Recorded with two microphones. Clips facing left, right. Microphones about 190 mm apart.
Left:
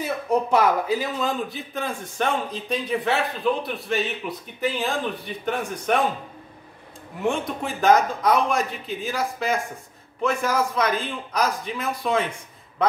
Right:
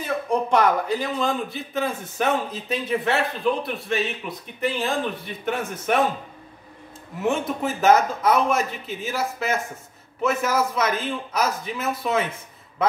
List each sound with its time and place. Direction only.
0.0 s a man's voice: 5° left (ahead or behind)
7.2 s a man's voice: 5° right (ahead or behind)